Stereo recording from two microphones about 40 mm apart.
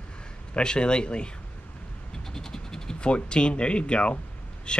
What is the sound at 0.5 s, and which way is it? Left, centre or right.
Speech, left.